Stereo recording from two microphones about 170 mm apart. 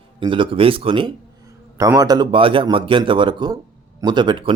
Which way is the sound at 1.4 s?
20° right (ahead or behind).